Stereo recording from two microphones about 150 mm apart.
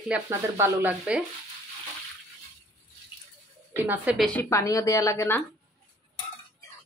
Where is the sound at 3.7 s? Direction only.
15° right (ahead or behind).